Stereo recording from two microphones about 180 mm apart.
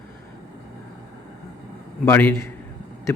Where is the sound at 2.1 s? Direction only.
15° left (ahead or behind).